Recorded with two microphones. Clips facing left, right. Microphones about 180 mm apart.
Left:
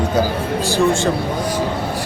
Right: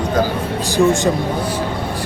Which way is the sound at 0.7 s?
15° right (ahead or behind).